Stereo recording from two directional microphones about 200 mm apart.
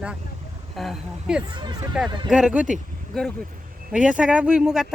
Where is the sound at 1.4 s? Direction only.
20° right (ahead or behind).